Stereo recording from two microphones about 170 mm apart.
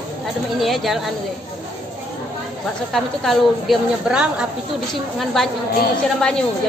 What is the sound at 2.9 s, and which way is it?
A woman's voice, centre (ahead or behind).